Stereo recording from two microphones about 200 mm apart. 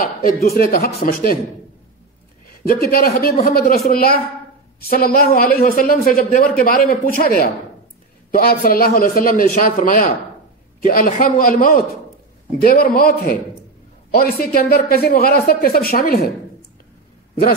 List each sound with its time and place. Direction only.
0.0 s a woman's voice: 45° left (ahead or behind)
2.4 s a man's voice: 50° left (ahead or behind)
14.4 s a woman's voice: 50° left (ahead or behind)